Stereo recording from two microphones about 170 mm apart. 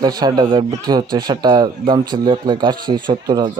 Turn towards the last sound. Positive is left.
turn(degrees=-25)  # may be behind; listen again after turning